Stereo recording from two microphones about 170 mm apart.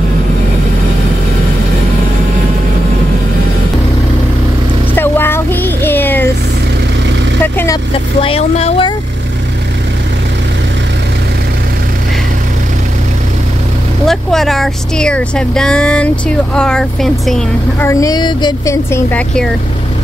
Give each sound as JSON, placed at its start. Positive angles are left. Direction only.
{"t": 4.9, "sound": "a sound", "side_deg": 15}
{"t": 7.4, "sound": "vehicle", "side_deg": 15}
{"t": 8.2, "sound": "vehicle", "side_deg": 35}
{"t": 14.0, "sound": "speech", "side_deg": 0}
{"t": 17.8, "sound": "a sound", "side_deg": 20}
{"t": 18.9, "sound": "speech", "side_deg": 15}